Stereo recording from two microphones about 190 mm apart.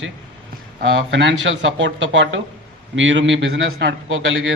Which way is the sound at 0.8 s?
75° right (ahead or behind).